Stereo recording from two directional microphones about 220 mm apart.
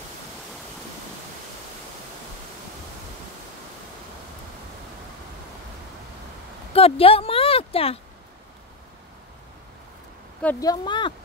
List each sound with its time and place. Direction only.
6.7 s speech: 25° left (ahead or behind)
10.4 s speech: 10° left (ahead or behind)